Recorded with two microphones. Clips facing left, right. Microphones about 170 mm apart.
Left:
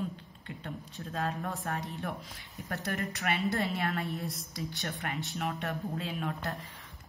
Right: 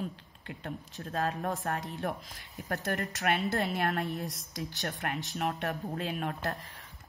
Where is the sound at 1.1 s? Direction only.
45° right (ahead or behind).